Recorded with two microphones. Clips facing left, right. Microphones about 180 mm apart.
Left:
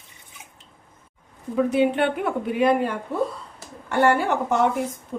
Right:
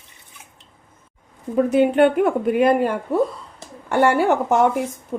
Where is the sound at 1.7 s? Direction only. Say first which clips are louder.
Right 6 dB; 45° right (ahead or behind).